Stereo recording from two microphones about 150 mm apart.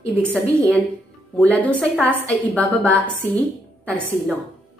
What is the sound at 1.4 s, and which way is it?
A woman's voice, 10° left (ahead or behind).